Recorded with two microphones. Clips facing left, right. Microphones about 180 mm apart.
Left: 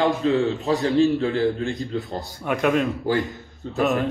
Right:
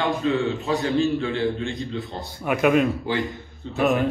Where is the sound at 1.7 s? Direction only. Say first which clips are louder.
Left 2 dB; centre (ahead or behind).